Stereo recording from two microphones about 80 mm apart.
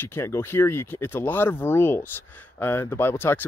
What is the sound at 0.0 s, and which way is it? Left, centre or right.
Speech, left.